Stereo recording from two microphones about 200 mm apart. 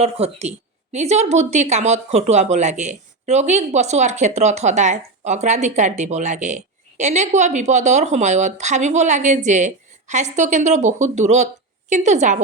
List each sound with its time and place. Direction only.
0.0 s speech: 30° right (ahead or behind)